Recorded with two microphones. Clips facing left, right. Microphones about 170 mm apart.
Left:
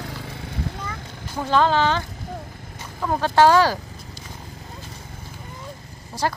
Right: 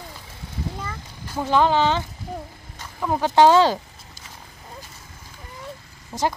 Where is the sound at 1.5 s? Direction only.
15° right (ahead or behind).